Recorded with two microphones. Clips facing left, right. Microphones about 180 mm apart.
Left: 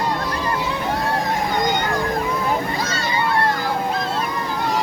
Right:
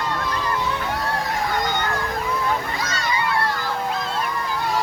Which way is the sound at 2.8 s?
30° left (ahead or behind).